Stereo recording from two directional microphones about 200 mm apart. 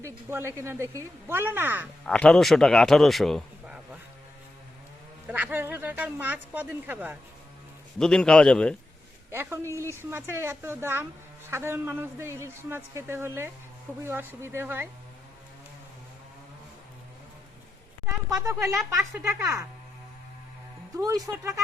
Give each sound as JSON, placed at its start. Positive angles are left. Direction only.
{"t": 0.0, "sound": "a man's voice", "side_deg": -10}
{"t": 2.0, "sound": "speech", "side_deg": 5}
{"t": 5.3, "sound": "a man's voice", "side_deg": -10}
{"t": 7.9, "sound": "speech", "side_deg": 5}
{"t": 9.3, "sound": "a man's voice", "side_deg": -10}
{"t": 18.0, "sound": "a man's voice", "side_deg": -10}
{"t": 20.9, "sound": "a man's voice", "side_deg": -20}